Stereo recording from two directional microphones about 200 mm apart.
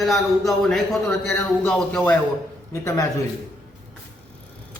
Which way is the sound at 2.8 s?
15° left (ahead or behind).